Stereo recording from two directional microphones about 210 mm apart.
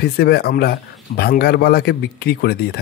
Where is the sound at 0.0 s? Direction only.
50° left (ahead or behind).